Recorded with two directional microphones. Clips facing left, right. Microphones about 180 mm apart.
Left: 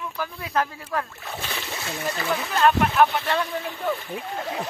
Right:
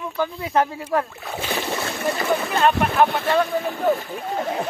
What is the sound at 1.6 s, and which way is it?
Splash, 50° right (ahead or behind).